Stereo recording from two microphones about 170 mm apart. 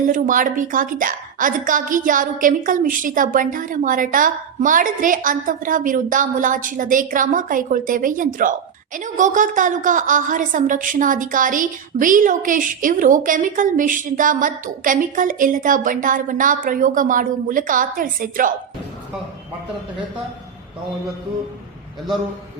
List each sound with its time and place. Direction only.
0.1 s a woman's voice: 50° right (ahead or behind)